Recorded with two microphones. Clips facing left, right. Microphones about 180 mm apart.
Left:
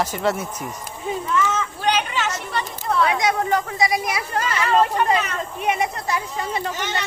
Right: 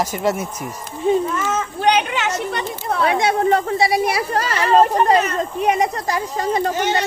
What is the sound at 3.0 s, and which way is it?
A woman's voice, 30° right (ahead or behind).